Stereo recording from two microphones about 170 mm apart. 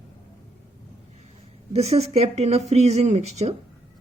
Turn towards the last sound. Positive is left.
turn(degrees=-40)  # may be behind; listen again after turning